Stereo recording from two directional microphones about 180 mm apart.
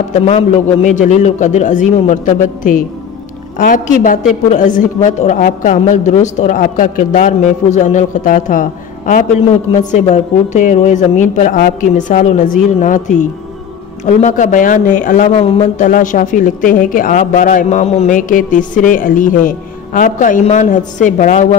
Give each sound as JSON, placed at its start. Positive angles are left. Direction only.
{"t": 0.3, "sound": "a man's voice", "side_deg": 35}
{"t": 15.4, "sound": "a man's voice", "side_deg": 30}
{"t": 15.8, "sound": "a man's voice", "side_deg": 45}